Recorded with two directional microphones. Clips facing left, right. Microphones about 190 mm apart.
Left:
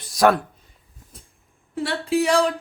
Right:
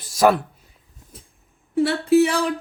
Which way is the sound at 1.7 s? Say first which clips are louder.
Right 6 dB; centre (ahead or behind).